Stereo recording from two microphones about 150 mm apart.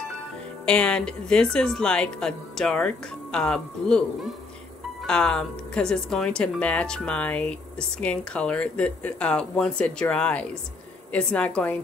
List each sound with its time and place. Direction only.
0.7 s a woman's voice: 5° left (ahead or behind)